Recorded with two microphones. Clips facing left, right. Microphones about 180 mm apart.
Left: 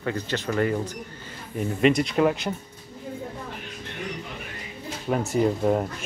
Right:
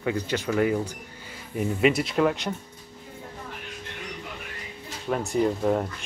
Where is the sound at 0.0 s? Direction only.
10° right (ahead or behind).